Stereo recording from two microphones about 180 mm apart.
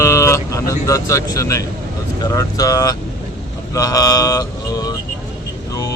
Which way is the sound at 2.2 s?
20° left (ahead or behind).